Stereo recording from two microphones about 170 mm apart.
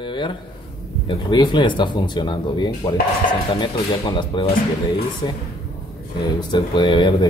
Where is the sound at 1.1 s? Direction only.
25° left (ahead or behind).